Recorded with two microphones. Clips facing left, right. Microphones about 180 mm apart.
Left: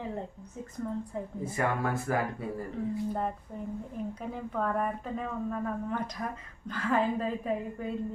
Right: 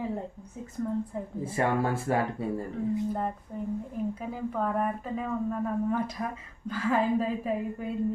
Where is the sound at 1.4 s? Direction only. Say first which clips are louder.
Right 4 dB; 30° right (ahead or behind).